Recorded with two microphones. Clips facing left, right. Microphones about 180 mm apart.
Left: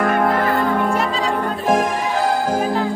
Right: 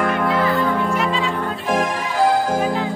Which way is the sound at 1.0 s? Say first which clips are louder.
Left 1 dB; 40° left (ahead or behind).